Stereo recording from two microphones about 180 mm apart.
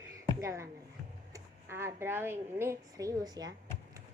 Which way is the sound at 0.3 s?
15° right (ahead or behind).